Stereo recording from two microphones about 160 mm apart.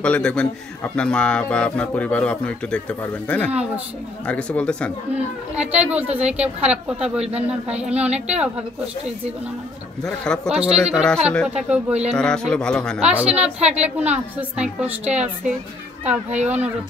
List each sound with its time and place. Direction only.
0.0 s a man's voice: 5° left (ahead or behind)
5.6 s a woman's voice: 10° right (ahead or behind)
10.0 s a woman's voice: 5° left (ahead or behind)
12.2 s speech: 5° left (ahead or behind)
13.1 s a woman's voice: 10° right (ahead or behind)
13.6 s a woman's voice: 45° right (ahead or behind)
13.8 s a woman's voice: 10° right (ahead or behind)